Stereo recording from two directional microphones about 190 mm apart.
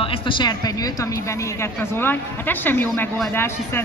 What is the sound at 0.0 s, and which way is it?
Speech, 30° left (ahead or behind).